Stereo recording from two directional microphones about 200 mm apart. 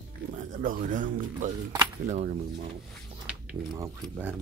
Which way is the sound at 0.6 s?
40° right (ahead or behind).